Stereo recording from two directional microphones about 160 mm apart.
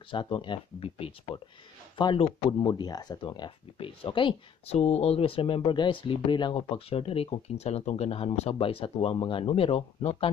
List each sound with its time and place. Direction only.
0.1 s speech: 30° left (ahead or behind)